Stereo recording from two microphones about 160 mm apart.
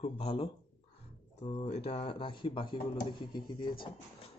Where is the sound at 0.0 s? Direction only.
35° left (ahead or behind).